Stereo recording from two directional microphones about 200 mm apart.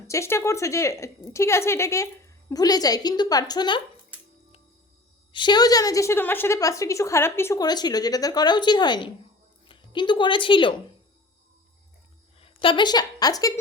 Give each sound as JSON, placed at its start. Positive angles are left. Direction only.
{"t": 0.1, "sound": "a woman's voice", "side_deg": 15}
{"t": 5.3, "sound": "a woman's voice", "side_deg": 20}
{"t": 12.4, "sound": "a woman's voice", "side_deg": 25}